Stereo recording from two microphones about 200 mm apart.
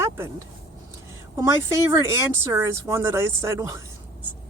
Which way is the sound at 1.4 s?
15° right (ahead or behind).